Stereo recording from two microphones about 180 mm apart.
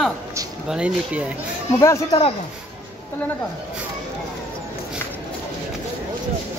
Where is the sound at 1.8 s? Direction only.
20° left (ahead or behind).